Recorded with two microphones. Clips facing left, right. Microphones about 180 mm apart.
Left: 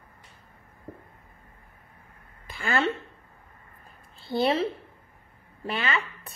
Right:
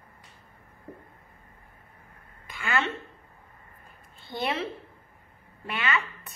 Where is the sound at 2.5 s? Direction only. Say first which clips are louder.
Left 3 dB; 35° left (ahead or behind).